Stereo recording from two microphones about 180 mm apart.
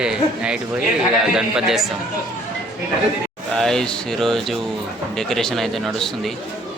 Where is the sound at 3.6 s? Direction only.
5° left (ahead or behind).